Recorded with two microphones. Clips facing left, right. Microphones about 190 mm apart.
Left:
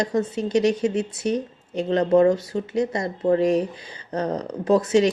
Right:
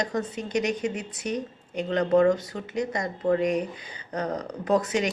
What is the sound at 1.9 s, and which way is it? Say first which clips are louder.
Speech: left 3 dB; 25° left (ahead or behind).